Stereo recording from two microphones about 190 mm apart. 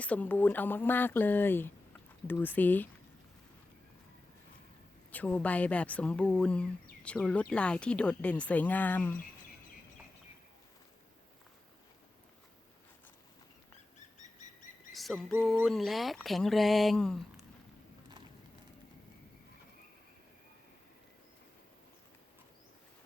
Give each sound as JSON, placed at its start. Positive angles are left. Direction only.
{"t": 0.0, "sound": "speech", "side_deg": 10}
{"t": 5.1, "sound": "speech", "side_deg": 10}
{"t": 14.2, "sound": "bird vocalization", "side_deg": 40}
{"t": 14.9, "sound": "a sound", "side_deg": 0}
{"t": 15.3, "sound": "speech", "side_deg": -10}